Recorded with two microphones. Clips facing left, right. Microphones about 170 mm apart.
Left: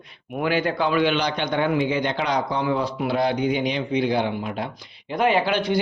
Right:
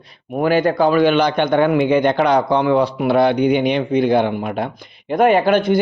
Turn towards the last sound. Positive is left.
turn(degrees=-50)  # may be behind; listen again after turning